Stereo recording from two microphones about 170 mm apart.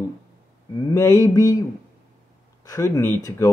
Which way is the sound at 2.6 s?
20° left (ahead or behind).